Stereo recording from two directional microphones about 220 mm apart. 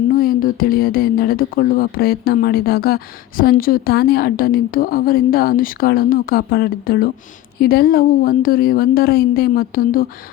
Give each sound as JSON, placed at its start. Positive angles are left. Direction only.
{"t": 0.1, "sound": "a woman's voice", "side_deg": 40}